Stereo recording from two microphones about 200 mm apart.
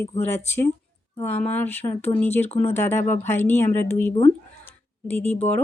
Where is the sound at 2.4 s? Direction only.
30° left (ahead or behind).